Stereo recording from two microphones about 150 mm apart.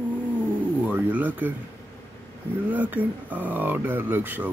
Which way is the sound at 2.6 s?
10° right (ahead or behind).